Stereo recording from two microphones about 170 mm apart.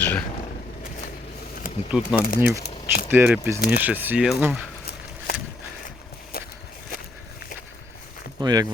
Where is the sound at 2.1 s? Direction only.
60° left (ahead or behind).